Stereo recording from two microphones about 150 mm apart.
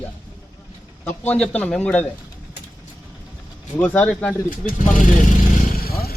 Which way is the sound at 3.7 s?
10° left (ahead or behind).